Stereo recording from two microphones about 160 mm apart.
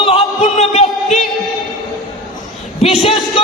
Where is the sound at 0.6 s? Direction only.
45° left (ahead or behind).